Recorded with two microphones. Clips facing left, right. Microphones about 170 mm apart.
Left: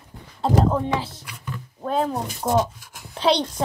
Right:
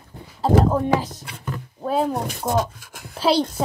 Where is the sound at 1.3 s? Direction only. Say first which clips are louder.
Right 4 dB; 45° right (ahead or behind).